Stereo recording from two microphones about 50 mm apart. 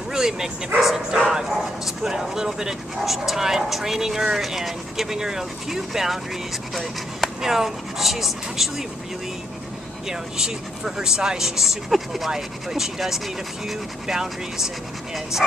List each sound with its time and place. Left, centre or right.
0.1 s speech: centre
6.7 s speech: centre
7.4 s speech: centre
10.0 s speech: centre